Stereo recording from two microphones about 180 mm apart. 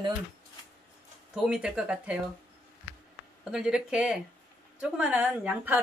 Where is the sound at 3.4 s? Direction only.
5° right (ahead or behind).